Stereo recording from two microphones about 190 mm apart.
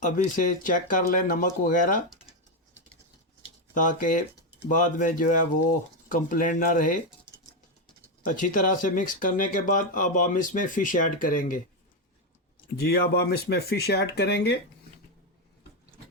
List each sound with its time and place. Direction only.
0.0 s speech: 45° left (ahead or behind)
3.8 s speech: 45° left (ahead or behind)
8.3 s speech: 45° left (ahead or behind)
12.7 s speech: 55° left (ahead or behind)